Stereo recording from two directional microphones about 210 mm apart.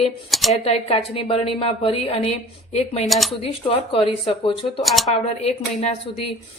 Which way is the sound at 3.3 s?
25° left (ahead or behind).